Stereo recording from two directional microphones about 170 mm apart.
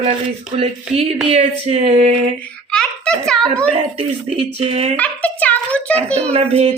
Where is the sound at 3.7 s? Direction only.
35° right (ahead or behind).